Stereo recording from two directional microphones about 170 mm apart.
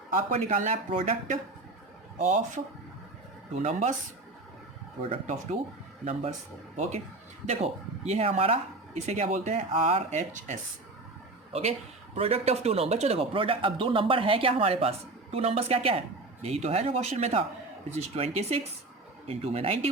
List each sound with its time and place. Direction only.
0.1 s speech: 50° right (ahead or behind)
3.5 s speech: 45° right (ahead or behind)
5.2 s speech: 45° right (ahead or behind)
6.0 s speech: 5° right (ahead or behind)
7.4 s speech: 40° right (ahead or behind)
12.1 s speech: 35° right (ahead or behind)